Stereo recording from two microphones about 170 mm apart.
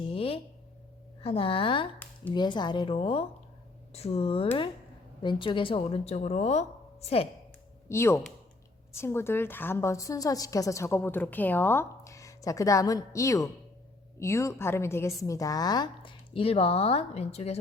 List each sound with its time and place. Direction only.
0.0 s a sound: 30° left (ahead or behind)
1.2 s a woman's voice: 35° left (ahead or behind)
7.9 s a woman's voice: 15° left (ahead or behind); by 17.6 s 40° left (ahead or behind)